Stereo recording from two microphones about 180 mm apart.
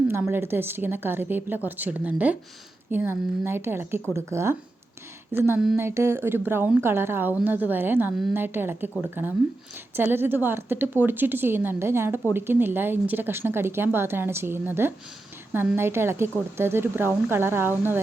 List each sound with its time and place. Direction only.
0.1 s a woman's voice: 10° right (ahead or behind)